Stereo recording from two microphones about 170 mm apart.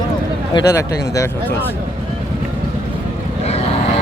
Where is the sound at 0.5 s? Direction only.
20° left (ahead or behind).